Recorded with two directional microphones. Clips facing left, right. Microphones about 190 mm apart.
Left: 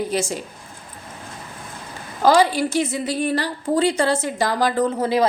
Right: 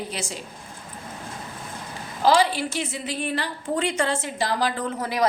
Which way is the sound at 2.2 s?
45° left (ahead or behind).